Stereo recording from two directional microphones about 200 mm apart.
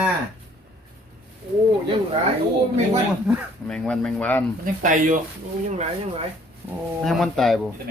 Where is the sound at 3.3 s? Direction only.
5° left (ahead or behind).